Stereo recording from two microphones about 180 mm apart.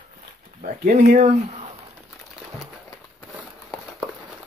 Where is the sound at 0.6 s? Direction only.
50° right (ahead or behind).